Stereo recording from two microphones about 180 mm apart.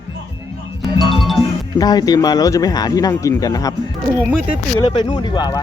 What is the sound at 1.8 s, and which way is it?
Speech, 20° left (ahead or behind).